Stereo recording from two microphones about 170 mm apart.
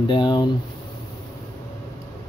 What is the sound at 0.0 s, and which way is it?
Speech, 25° left (ahead or behind).